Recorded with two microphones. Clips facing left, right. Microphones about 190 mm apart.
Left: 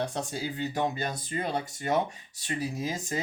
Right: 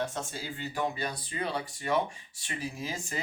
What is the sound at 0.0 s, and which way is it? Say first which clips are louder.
Speech: left 3 dB; 35° left (ahead or behind).